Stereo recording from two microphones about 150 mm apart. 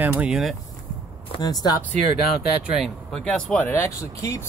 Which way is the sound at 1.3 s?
25° left (ahead or behind).